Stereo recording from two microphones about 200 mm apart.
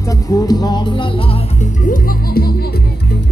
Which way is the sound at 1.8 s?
45° left (ahead or behind).